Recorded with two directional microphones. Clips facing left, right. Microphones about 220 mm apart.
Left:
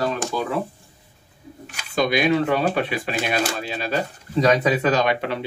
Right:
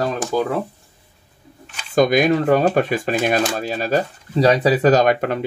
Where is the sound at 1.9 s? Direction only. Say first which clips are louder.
Right 4 dB; 45° right (ahead or behind).